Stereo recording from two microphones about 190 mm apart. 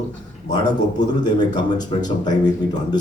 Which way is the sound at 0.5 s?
20° left (ahead or behind).